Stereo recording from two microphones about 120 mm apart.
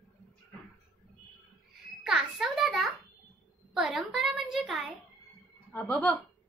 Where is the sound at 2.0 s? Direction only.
5° right (ahead or behind).